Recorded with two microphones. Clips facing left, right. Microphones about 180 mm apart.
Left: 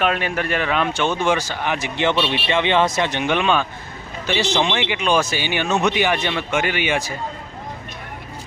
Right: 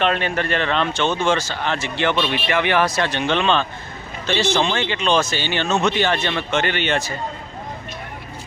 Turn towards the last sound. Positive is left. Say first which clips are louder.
# even
turn(degrees=10)  # may be behind; listen again after turning